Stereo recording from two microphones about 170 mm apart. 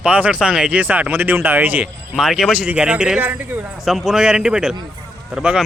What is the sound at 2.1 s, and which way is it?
Speech, centre (ahead or behind).